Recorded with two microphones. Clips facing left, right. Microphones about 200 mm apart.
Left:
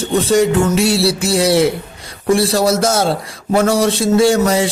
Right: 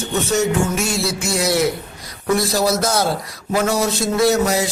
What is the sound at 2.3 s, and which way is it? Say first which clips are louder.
A man's voice: left 4 dB; 30° left (ahead or behind).